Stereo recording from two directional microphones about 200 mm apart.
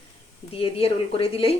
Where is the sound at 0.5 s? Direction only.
30° left (ahead or behind).